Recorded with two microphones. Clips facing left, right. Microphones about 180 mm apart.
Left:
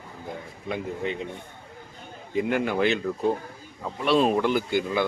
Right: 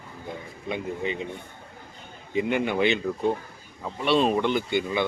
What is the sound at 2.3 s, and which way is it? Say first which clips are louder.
Speech: even; centre (ahead or behind).